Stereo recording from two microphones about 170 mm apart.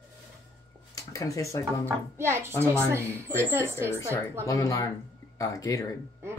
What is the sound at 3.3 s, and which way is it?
Speech, 15° right (ahead or behind).